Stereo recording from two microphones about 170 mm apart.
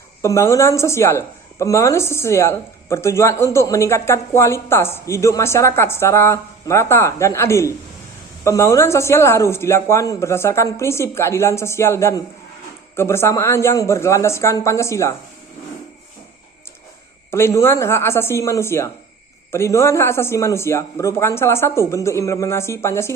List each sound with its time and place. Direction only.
0.2 s speech: 15° left (ahead or behind)
17.3 s speech: 15° left (ahead or behind)